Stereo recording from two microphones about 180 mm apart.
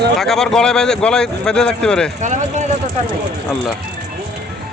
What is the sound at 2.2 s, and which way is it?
Speech, 40° right (ahead or behind).